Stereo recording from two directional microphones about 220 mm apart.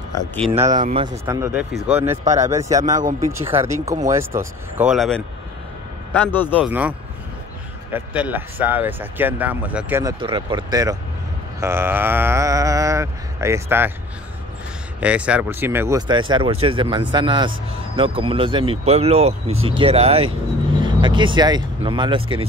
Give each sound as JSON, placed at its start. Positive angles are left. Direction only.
{"t": 0.5, "sound": "speech", "side_deg": -30}
{"t": 1.0, "sound": "speech", "side_deg": -20}
{"t": 1.5, "sound": "speech", "side_deg": -5}
{"t": 3.0, "sound": "speech", "side_deg": -35}
{"t": 3.3, "sound": "a man's voice", "side_deg": -10}
{"t": 6.6, "sound": "speech", "side_deg": -5}
{"t": 10.2, "sound": "speech", "side_deg": -20}
{"t": 15.0, "sound": "speech", "side_deg": -5}